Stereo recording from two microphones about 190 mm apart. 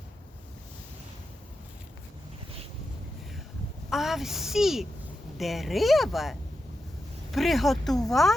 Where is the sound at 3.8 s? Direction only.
Centre (ahead or behind).